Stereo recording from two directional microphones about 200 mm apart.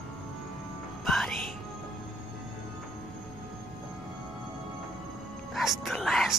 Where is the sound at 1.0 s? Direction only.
Centre (ahead or behind).